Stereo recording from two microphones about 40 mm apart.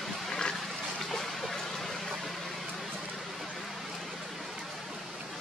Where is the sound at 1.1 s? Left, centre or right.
Centre.